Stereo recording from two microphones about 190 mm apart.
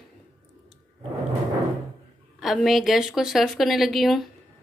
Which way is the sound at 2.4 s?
Centre (ahead or behind).